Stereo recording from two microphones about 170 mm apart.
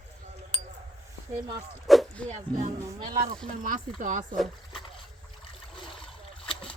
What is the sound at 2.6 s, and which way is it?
Speech, 40° right (ahead or behind).